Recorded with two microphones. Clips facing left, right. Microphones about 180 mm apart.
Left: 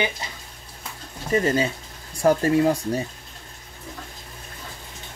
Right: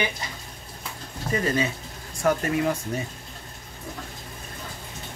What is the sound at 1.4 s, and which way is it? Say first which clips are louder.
Speech: left 4 dB; 30° left (ahead or behind).